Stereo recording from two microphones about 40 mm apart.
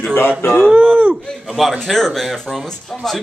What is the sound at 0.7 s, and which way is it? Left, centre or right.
Speech, right.